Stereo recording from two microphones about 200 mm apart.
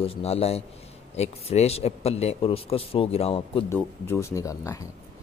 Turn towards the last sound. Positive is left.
turn(degrees=15)  # may be behind; listen again after turning